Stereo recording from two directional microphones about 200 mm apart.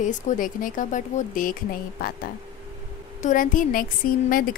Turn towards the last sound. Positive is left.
turn(degrees=45)  # may be behind; listen again after turning